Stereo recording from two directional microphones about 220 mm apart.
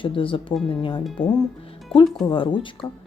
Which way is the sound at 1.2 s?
5° left (ahead or behind).